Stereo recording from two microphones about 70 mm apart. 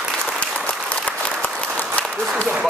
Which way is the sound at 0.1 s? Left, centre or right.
Centre.